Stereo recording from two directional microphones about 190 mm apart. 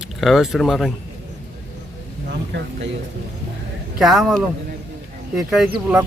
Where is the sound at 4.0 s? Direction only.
Centre (ahead or behind).